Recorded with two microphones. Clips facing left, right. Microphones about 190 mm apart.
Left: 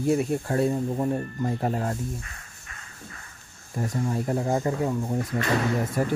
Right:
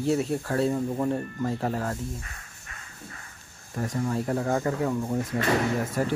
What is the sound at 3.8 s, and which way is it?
Speech, 15° left (ahead or behind).